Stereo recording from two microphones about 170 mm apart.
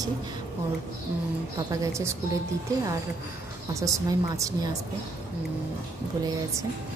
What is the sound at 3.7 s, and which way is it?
Speech, 20° right (ahead or behind).